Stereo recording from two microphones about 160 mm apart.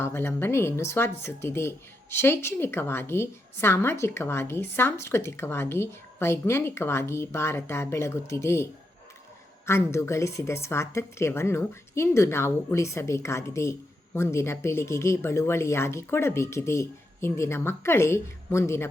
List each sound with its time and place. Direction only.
0.0 s a woman's voice: 15° left (ahead or behind)
9.6 s a woman's voice: 15° left (ahead or behind)